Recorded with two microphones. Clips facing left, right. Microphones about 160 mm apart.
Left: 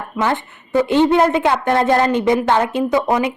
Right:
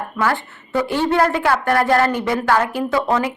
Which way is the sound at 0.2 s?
20° left (ahead or behind).